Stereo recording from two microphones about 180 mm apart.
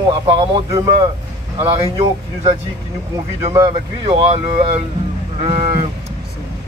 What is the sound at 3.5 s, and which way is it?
Speech, 25° right (ahead or behind).